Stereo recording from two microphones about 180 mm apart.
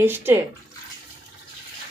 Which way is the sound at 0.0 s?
10° right (ahead or behind).